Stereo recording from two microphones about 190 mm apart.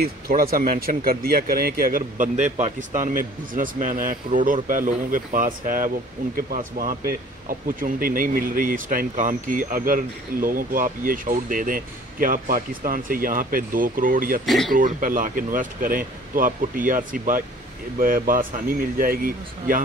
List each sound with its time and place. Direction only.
0.0 s speech: 50° right (ahead or behind)
14.4 s speech: centre (ahead or behind)
14.7 s speech: 45° right (ahead or behind)